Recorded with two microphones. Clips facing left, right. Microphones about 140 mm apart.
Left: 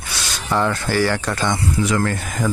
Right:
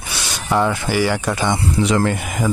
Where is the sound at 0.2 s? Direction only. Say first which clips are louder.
Right 2 dB; 15° right (ahead or behind).